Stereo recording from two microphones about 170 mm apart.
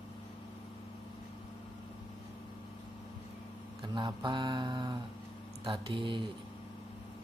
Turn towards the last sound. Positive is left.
turn(degrees=-30)  # may be behind; listen again after turning